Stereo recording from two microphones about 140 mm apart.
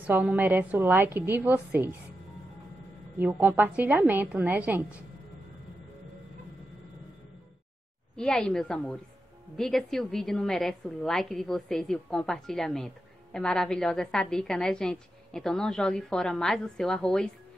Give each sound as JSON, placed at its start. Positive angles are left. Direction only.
{"t": 0.0, "sound": "a woman's voice", "side_deg": -10}
{"t": 3.2, "sound": "a woman's voice", "side_deg": -10}
{"t": 8.2, "sound": "a woman's voice", "side_deg": 5}